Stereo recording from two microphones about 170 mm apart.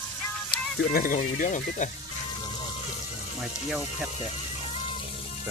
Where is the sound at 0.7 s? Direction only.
55° left (ahead or behind).